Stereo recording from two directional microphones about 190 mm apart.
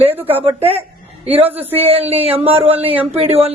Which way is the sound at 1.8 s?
30° right (ahead or behind).